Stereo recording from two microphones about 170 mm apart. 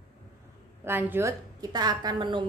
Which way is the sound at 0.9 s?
10° right (ahead or behind).